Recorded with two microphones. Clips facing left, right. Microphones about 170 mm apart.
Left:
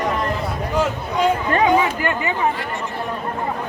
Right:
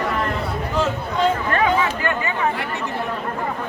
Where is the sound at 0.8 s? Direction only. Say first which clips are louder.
Left 1 dB; 15° left (ahead or behind).